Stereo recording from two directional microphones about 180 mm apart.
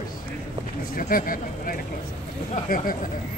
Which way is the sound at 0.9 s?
50° left (ahead or behind).